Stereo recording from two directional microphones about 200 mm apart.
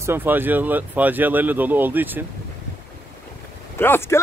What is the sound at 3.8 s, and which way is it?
Speech, 10° left (ahead or behind).